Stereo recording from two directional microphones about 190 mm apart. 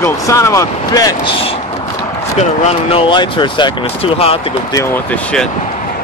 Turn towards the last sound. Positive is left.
turn(degrees=5)  # may be behind; listen again after turning